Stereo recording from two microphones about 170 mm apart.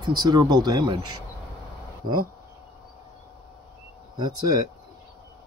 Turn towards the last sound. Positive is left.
turn(degrees=-25)  # may be behind; listen again after turning